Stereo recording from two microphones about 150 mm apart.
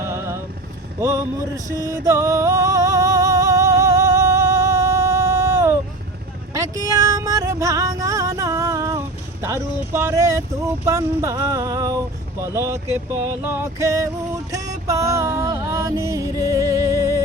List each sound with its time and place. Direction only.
0.0 s vehicle: 20° right (ahead or behind)
1.0 s a sound: 20° right (ahead or behind)
1.7 s music: 20° left (ahead or behind)
2.0 s music: 20° right (ahead or behind)
9.4 s a sound: 20° right (ahead or behind)
14.5 s music: 20° right (ahead or behind)